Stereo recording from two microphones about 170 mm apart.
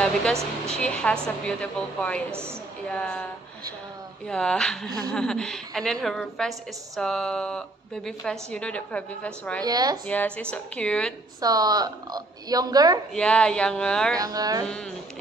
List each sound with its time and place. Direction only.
0.0 s a woman's voice: 5° left (ahead or behind)
4.3 s a woman's voice: 5° left (ahead or behind)
9.7 s a woman's voice: 20° right (ahead or behind)
10.0 s a woman's voice: 5° left (ahead or behind)
11.4 s a woman's voice: 20° right (ahead or behind)
13.1 s a woman's voice: 5° left (ahead or behind)
14.1 s a woman's voice: 20° right (ahead or behind)